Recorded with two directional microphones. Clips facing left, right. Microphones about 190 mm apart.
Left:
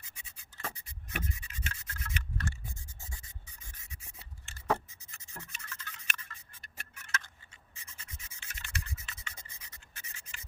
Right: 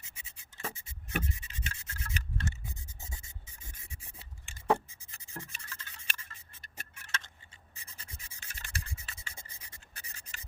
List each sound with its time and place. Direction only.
0.0 s scratch: 25° right (ahead or behind)
3.1 s rub: 25° right (ahead or behind)
4.9 s a sound: 30° right (ahead or behind)